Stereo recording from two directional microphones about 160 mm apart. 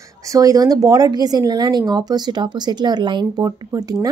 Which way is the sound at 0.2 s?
20° right (ahead or behind).